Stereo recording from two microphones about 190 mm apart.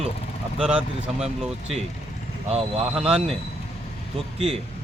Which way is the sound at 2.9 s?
5° right (ahead or behind).